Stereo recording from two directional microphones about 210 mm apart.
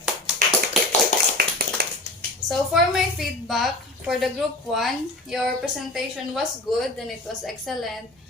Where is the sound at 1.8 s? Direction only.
50° right (ahead or behind).